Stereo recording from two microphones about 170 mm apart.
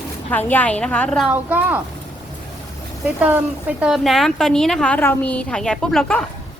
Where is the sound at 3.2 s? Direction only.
10° right (ahead or behind).